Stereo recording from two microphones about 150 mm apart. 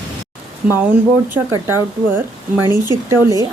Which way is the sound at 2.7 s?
25° left (ahead or behind).